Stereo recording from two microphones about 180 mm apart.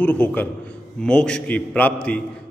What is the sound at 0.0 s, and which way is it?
A man's voice, 10° left (ahead or behind).